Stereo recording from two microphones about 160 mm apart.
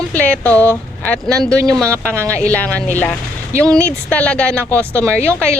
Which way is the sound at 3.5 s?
20° right (ahead or behind).